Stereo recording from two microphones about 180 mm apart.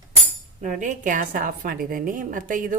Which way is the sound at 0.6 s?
45° right (ahead or behind).